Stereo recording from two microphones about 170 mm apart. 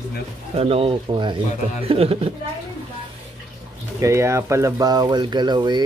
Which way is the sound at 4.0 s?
15° right (ahead or behind).